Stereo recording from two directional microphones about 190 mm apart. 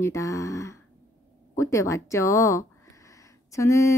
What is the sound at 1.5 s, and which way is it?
Speech, 15° left (ahead or behind).